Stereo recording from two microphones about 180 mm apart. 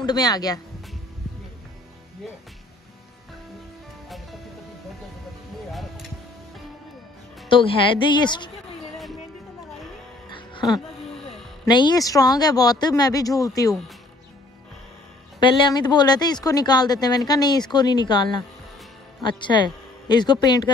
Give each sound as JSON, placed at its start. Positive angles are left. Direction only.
{"t": 0.0, "sound": "speech", "side_deg": 20}
{"t": 5.7, "sound": "music", "side_deg": 0}
{"t": 7.4, "sound": "speech", "side_deg": 30}
{"t": 10.3, "sound": "music", "side_deg": 25}
{"t": 11.6, "sound": "speech", "side_deg": 25}
{"t": 15.4, "sound": "a woman's voice", "side_deg": 25}